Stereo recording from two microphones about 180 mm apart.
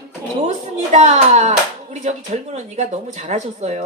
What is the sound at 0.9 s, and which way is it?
A woman's voice, 40° right (ahead or behind).